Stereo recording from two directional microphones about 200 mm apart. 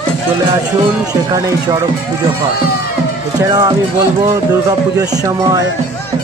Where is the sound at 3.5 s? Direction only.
20° right (ahead or behind).